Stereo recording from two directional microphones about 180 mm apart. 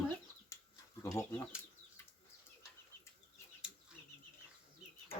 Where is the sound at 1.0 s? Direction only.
15° left (ahead or behind).